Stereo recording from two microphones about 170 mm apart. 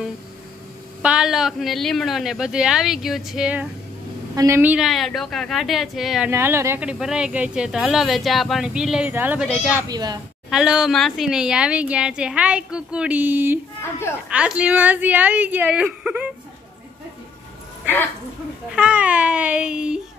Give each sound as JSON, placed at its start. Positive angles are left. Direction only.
{"t": 1.0, "sound": "speech", "side_deg": -5}
{"t": 6.3, "sound": "speech", "side_deg": -15}
{"t": 9.8, "sound": "speech", "side_deg": -25}
{"t": 10.5, "sound": "a woman's voice", "side_deg": -5}
{"t": 18.7, "sound": "a woman's voice", "side_deg": -5}